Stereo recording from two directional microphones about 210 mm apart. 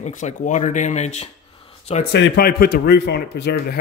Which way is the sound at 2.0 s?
50° left (ahead or behind).